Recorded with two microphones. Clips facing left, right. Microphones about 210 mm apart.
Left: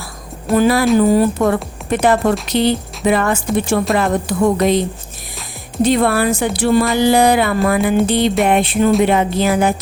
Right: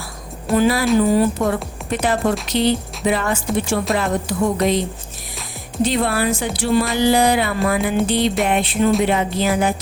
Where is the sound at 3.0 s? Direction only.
55° left (ahead or behind).